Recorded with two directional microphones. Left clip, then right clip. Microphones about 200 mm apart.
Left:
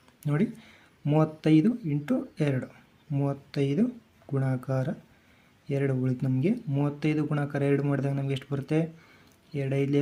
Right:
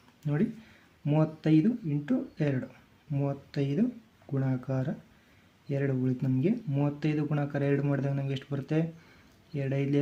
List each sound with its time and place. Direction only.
0.2 s speech: 20° left (ahead or behind)